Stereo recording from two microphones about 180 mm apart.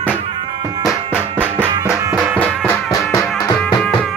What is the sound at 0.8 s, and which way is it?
Music, 5° right (ahead or behind).